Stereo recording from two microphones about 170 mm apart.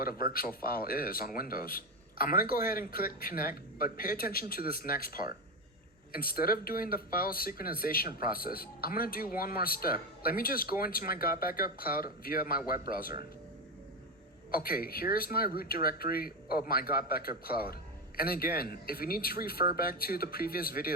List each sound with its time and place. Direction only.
0.0 s speech: 60° left (ahead or behind)
14.5 s speech: 60° left (ahead or behind)